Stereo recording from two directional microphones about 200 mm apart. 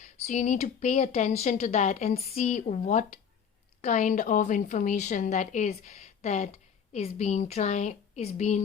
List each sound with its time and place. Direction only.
0.0 s a woman's voice: 40° left (ahead or behind)